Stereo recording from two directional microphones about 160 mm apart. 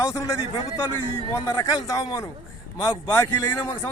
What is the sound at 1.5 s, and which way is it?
Speech, 20° left (ahead or behind).